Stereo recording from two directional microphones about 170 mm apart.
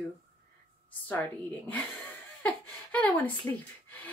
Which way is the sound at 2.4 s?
10° left (ahead or behind).